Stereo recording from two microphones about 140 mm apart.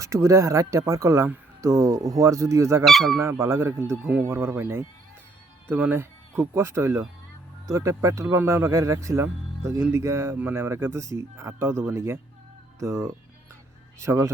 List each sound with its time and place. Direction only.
0.0 s speech: 20° right (ahead or behind)
2.8 s speech: centre (ahead or behind)
3.2 s speech: 20° right (ahead or behind)